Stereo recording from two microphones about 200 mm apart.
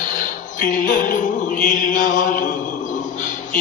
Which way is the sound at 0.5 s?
40° left (ahead or behind).